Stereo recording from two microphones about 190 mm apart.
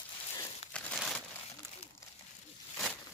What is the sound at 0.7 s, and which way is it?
Crumpling, 5° left (ahead or behind).